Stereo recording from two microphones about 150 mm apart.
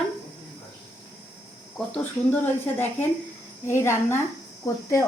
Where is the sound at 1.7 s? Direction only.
10° left (ahead or behind).